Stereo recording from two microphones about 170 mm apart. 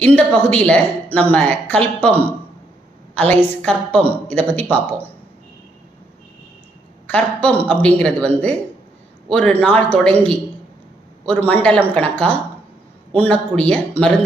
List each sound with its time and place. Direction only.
0.0 s speech: 10° left (ahead or behind)
7.1 s speech: 5° left (ahead or behind)
9.3 s speech: 5° left (ahead or behind)
11.3 s speech: 10° left (ahead or behind)